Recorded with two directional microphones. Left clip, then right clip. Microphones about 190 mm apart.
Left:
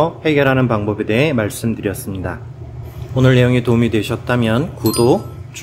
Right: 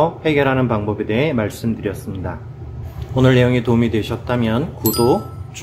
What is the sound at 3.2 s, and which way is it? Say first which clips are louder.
Speech: left 1 dB; 10° left (ahead or behind).